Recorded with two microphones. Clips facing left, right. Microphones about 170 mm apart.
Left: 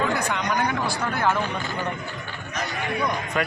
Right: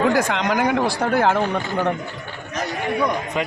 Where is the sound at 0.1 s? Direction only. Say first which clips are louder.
Right 5 dB; 90° right.